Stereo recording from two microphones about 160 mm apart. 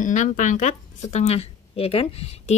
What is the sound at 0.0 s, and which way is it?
Speech, 50° left (ahead or behind).